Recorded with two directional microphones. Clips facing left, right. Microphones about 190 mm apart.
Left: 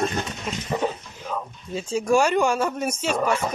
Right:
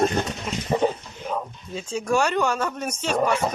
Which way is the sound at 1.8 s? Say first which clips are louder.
Left 3 dB; 10° left (ahead or behind).